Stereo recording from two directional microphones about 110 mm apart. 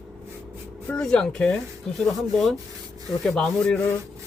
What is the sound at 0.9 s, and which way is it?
Speech, 10° left (ahead or behind).